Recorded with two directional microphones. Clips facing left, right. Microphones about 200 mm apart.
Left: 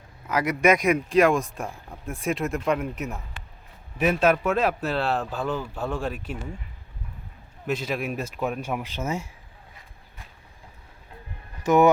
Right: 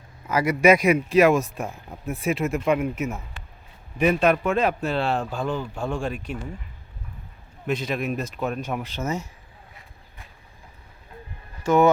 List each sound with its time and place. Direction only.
0.3 s speech: centre (ahead or behind)
7.7 s speech: 5° left (ahead or behind)
11.6 s speech: 15° left (ahead or behind)